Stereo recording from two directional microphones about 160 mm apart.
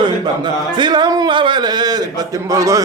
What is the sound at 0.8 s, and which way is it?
A man's voice, 25° right (ahead or behind).